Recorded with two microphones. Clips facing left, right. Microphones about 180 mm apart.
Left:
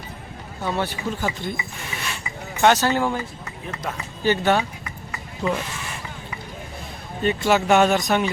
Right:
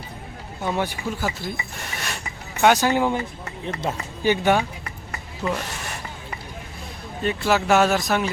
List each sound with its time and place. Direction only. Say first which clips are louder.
0.6 s speech: even; 15° right (ahead or behind)
2.6 s speech: even; 10° right (ahead or behind)
3.7 s speech: right 4 dB; 30° right (ahead or behind)
4.2 s speech: even; 15° right (ahead or behind)
5.4 s speech: left 2 dB; centre (ahead or behind)
7.2 s speech: left 2 dB; centre (ahead or behind)